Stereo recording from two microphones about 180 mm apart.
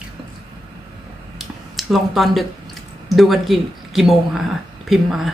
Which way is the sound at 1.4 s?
Centre (ahead or behind).